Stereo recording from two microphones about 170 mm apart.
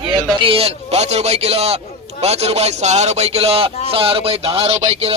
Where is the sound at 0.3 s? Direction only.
35° right (ahead or behind).